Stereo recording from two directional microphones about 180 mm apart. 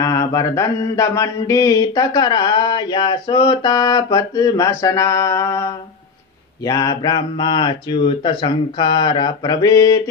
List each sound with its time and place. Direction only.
0.0 s mantra: 20° left (ahead or behind)